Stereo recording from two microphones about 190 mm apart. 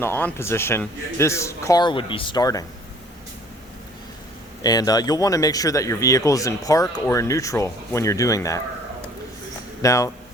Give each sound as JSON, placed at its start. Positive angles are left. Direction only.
{"t": 0.0, "sound": "speech", "side_deg": 10}
{"t": 4.6, "sound": "speech", "side_deg": 20}
{"t": 9.8, "sound": "speech", "side_deg": 15}